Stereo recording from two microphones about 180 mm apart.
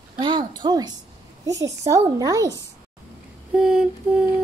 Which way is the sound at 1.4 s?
20° right (ahead or behind).